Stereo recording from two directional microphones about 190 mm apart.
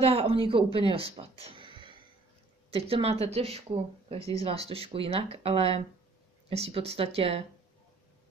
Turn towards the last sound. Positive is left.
turn(degrees=-30)  # may be behind; listen again after turning